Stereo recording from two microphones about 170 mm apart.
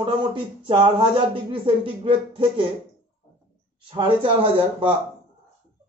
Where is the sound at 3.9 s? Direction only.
30° right (ahead or behind).